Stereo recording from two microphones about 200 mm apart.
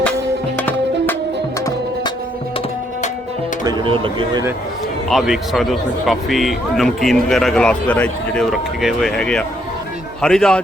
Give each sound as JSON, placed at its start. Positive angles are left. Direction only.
{"t": 0.5, "sound": "music", "side_deg": 10}
{"t": 3.6, "sound": "speech", "side_deg": -20}
{"t": 5.0, "sound": "speech", "side_deg": 0}